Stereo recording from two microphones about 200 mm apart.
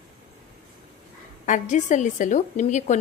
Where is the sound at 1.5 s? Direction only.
35° left (ahead or behind).